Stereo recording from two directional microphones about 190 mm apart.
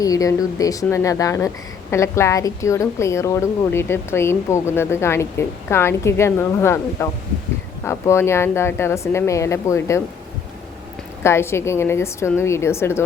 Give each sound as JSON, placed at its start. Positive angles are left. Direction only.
{"t": 0.0, "sound": "a woman's voice", "side_deg": 20}
{"t": 11.2, "sound": "a woman's voice", "side_deg": 15}